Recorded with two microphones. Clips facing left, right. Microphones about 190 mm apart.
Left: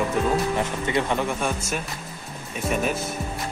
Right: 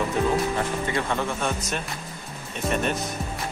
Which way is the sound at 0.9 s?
15° left (ahead or behind).